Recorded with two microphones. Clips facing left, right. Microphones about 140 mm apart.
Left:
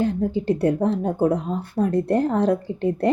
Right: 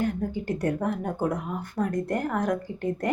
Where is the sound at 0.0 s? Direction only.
30° left (ahead or behind).